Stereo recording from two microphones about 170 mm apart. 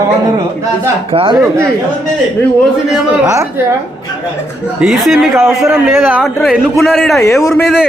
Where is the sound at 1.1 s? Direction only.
30° right (ahead or behind).